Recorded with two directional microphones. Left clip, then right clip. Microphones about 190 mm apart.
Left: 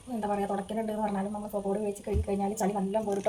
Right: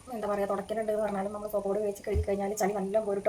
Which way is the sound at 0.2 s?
15° right (ahead or behind).